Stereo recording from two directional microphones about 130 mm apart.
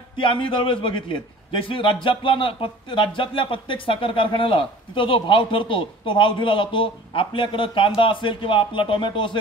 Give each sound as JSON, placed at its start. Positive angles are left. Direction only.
{"t": 0.2, "sound": "speech", "side_deg": 40}